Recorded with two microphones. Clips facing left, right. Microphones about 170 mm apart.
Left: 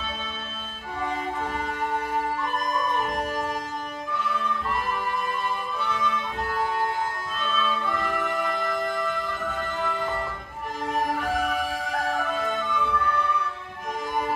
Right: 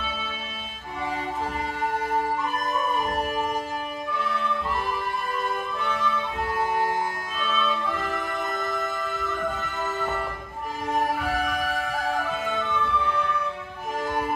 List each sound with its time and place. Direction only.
3.1 s music: 5° right (ahead or behind)
7.5 s music: 5° right (ahead or behind)
11.3 s music: centre (ahead or behind)